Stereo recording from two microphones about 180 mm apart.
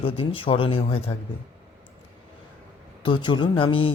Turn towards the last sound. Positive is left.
turn(degrees=30)  # may be behind; listen again after turning